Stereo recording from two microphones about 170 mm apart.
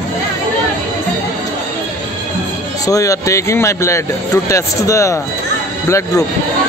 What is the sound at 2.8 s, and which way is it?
Speech, 20° left (ahead or behind).